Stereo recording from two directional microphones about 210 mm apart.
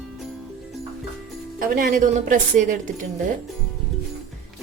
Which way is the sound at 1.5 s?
40° right (ahead or behind).